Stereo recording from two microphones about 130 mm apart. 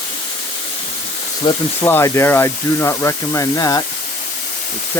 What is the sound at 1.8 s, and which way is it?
Speech, 20° left (ahead or behind).